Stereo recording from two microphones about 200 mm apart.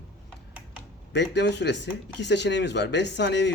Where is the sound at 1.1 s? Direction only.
60° left (ahead or behind).